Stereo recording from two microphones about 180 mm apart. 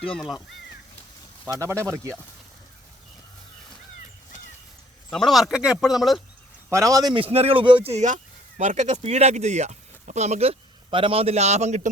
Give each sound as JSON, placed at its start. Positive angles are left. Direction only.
{"t": 0.1, "sound": "speech", "side_deg": 0}
{"t": 1.5, "sound": "speech", "side_deg": -15}
{"t": 5.1, "sound": "speech", "side_deg": 0}
{"t": 6.7, "sound": "a man's voice", "side_deg": -15}
{"t": 7.9, "sound": "speech", "side_deg": -40}